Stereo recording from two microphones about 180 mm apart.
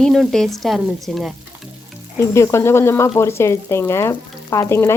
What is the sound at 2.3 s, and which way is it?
Speech, 15° left (ahead or behind).